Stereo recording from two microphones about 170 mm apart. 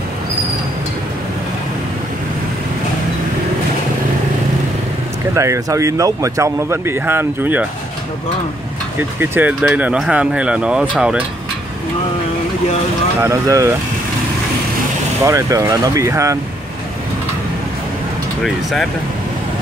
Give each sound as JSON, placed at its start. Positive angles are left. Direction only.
{"t": 5.3, "sound": "speech", "side_deg": -20}
{"t": 9.2, "sound": "speech", "side_deg": -10}
{"t": 13.2, "sound": "speech", "side_deg": -15}
{"t": 15.2, "sound": "speech", "side_deg": -20}
{"t": 18.4, "sound": "speech", "side_deg": 0}